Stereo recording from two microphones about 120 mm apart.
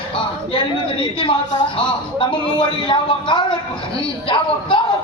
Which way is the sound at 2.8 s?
40° left (ahead or behind).